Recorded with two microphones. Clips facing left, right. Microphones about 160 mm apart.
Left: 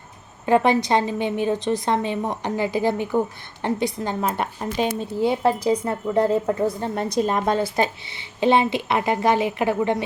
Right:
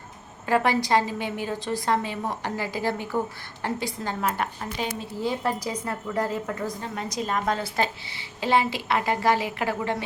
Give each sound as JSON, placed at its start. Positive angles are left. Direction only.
{"t": 0.4, "sound": "a woman's voice", "side_deg": 20}
{"t": 7.8, "sound": "a woman's voice", "side_deg": 20}